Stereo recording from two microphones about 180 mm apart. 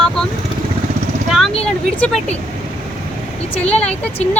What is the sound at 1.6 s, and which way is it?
Speech, 5° left (ahead or behind).